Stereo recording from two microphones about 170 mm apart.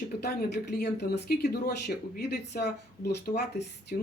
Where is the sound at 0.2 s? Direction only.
70° left (ahead or behind).